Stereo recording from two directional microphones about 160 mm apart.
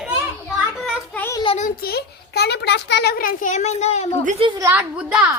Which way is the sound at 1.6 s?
65° left (ahead or behind).